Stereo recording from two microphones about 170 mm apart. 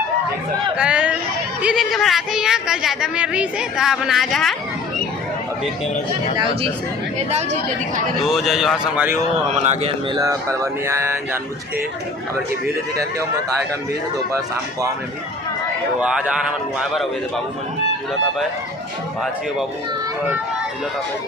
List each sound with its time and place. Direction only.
0.8 s a sound: 5° right (ahead or behind)
1.6 s a woman's voice: centre (ahead or behind)
6.3 s a man's voice: 30° right (ahead or behind)
8.3 s a woman's voice: centre (ahead or behind)
9.5 s a man's voice: 40° right (ahead or behind)
10.2 s speech: 15° right (ahead or behind)
16.0 s a woman's voice: 5° right (ahead or behind)